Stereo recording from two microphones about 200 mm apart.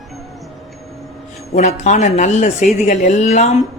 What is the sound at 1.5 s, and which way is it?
Speech, 35° left (ahead or behind).